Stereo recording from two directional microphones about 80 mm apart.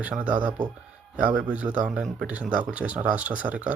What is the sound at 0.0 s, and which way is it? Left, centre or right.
A man's voice, centre.